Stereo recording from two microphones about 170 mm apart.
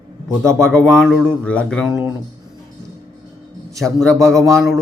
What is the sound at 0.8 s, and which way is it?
Speech, 5° left (ahead or behind).